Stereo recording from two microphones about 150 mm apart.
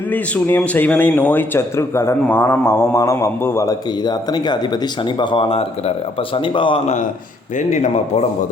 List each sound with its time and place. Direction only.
0.1 s a man's voice: 10° left (ahead or behind); by 6.8 s 35° left (ahead or behind)
7.5 s a man's voice: 50° left (ahead or behind)